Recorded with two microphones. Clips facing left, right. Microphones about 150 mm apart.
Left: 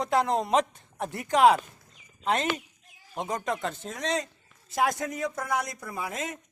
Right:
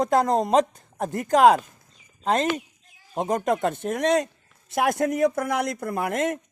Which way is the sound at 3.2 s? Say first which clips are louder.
Right 7 dB; 50° right (ahead or behind).